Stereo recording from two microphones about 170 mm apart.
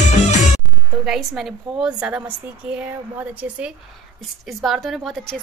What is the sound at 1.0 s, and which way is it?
A woman's voice, centre (ahead or behind).